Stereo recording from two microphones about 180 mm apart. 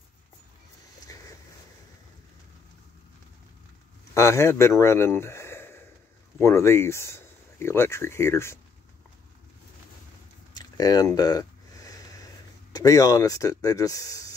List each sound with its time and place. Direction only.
1.1 s vehicle: 20° left (ahead or behind)
4.1 s speech: 15° left (ahead or behind)
10.5 s a sound: 20° left (ahead or behind)
12.7 s speech: 20° left (ahead or behind)